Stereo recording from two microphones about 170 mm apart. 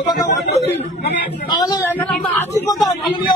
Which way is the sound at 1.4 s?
25° left (ahead or behind).